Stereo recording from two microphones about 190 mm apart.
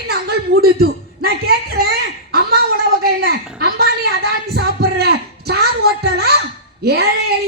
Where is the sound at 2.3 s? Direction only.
55° right (ahead or behind).